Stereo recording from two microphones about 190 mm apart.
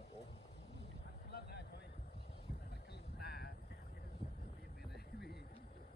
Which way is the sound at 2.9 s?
55° left (ahead or behind).